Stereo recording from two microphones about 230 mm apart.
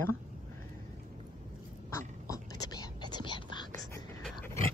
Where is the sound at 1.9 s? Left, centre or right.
Centre.